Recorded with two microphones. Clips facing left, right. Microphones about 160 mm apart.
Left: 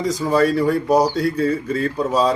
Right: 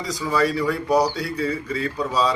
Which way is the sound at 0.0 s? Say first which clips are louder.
Left 5 dB; 50° left (ahead or behind).